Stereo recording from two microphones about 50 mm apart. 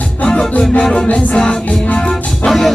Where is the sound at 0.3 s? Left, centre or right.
Centre.